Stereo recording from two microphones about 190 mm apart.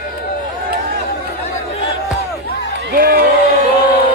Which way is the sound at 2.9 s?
60° right (ahead or behind).